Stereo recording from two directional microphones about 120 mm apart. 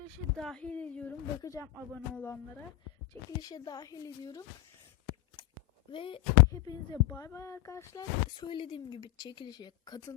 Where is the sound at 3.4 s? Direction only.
30° left (ahead or behind).